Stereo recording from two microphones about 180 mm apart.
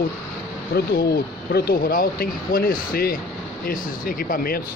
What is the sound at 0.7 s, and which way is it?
Speech, 60° left (ahead or behind).